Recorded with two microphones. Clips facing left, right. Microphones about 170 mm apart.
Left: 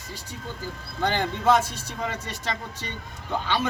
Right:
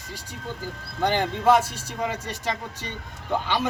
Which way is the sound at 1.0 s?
10° right (ahead or behind).